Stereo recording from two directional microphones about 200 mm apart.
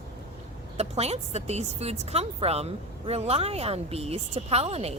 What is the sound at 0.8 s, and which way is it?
A woman's voice, 30° right (ahead or behind).